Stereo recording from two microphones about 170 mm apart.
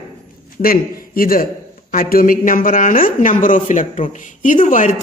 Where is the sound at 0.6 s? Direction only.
60° left (ahead or behind).